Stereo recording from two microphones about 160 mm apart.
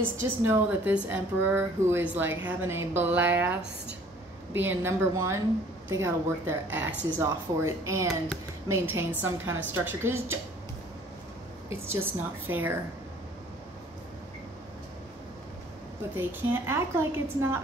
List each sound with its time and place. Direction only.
0.0 s speech: 15° right (ahead or behind)
11.7 s speech: 15° right (ahead or behind)
16.2 s speech: 15° right (ahead or behind)